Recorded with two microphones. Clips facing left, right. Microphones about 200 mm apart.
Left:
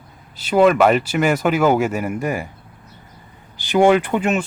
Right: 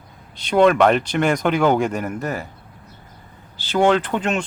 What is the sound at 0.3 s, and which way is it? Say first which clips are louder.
Speech: left 1 dB; 5° left (ahead or behind).